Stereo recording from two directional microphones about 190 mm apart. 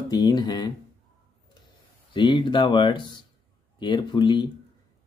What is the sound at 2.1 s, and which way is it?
Speech, 25° left (ahead or behind).